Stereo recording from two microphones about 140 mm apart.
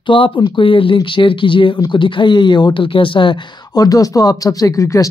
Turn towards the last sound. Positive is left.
turn(degrees=25)  # may be behind; listen again after turning